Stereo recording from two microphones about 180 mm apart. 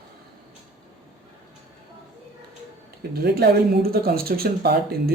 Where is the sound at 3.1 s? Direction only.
60° right (ahead or behind).